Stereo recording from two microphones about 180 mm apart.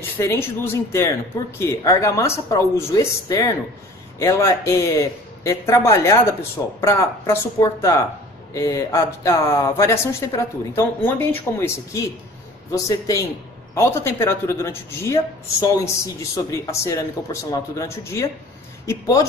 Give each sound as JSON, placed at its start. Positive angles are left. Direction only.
{"t": 0.0, "sound": "a man's voice", "side_deg": 15}